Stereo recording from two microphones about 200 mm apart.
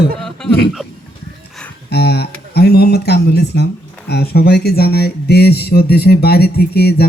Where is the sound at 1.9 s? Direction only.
55° left (ahead or behind).